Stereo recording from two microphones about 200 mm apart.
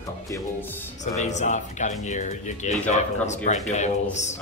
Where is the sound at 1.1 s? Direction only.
35° left (ahead or behind).